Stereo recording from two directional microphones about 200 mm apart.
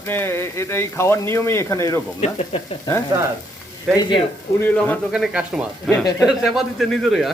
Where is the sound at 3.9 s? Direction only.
Centre (ahead or behind).